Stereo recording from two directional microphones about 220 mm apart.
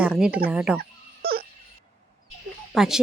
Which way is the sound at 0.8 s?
45° right (ahead or behind).